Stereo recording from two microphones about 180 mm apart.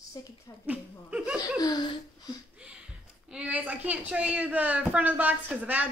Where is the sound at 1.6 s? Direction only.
20° left (ahead or behind).